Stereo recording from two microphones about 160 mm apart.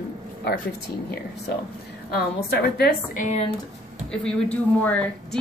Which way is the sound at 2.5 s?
75° left (ahead or behind).